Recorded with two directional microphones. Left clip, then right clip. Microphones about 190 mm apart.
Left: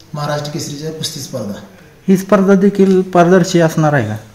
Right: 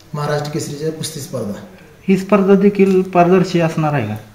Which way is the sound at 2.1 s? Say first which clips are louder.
Left 1 dB; 30° left (ahead or behind).